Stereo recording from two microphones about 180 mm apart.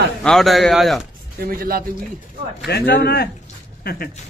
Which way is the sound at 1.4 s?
55° right (ahead or behind).